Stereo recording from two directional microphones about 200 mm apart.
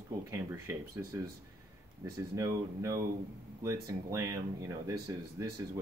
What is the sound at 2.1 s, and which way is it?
Speech, 15° right (ahead or behind).